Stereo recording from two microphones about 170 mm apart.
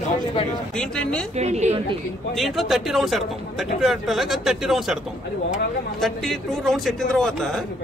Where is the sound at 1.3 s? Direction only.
40° right (ahead or behind).